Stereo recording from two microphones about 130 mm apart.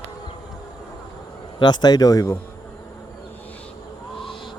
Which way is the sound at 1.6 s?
35° left (ahead or behind).